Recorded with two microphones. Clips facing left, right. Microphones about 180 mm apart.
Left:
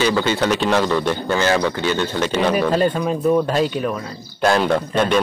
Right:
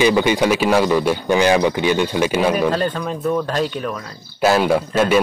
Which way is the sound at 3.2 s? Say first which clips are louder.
Left 3 dB; 15° left (ahead or behind).